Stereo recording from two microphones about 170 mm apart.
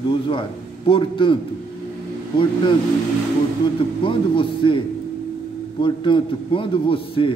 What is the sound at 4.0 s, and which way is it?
A man's voice, 30° left (ahead or behind).